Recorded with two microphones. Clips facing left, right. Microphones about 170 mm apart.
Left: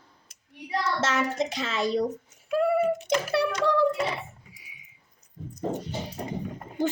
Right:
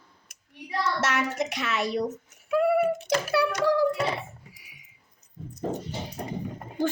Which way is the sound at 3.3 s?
25° left (ahead or behind).